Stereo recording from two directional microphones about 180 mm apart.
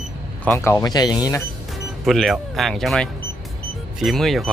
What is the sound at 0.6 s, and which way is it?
Speech, 15° left (ahead or behind).